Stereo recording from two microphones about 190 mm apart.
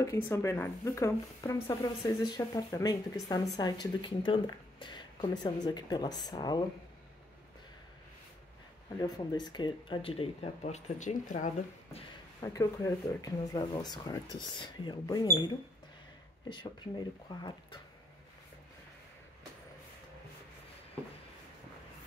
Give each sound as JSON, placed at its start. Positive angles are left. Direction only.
{"t": 0.0, "sound": "speech", "side_deg": 15}
{"t": 9.0, "sound": "speech", "side_deg": 20}
{"t": 12.4, "sound": "speech", "side_deg": 15}